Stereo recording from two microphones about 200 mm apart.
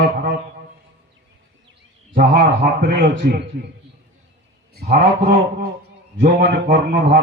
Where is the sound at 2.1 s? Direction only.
45° right (ahead or behind).